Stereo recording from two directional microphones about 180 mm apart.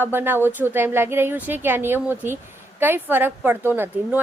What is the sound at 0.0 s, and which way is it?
A woman's voice, 10° right (ahead or behind).